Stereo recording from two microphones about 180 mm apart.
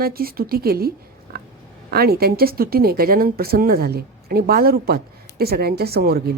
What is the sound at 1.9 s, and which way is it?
Speech, 60° right (ahead or behind).